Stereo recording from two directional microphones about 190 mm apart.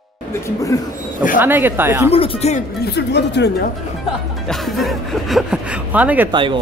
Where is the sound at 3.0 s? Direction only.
65° left (ahead or behind).